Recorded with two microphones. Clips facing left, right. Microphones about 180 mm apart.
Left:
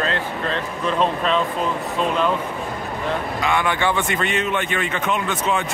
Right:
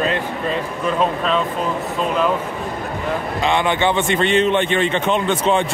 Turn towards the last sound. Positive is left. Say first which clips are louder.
# right 5 dB
turn(degrees=-30)  # may be behind; listen again after turning